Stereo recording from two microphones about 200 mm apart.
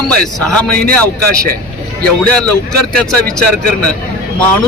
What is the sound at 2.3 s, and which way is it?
Speech, 5° left (ahead or behind).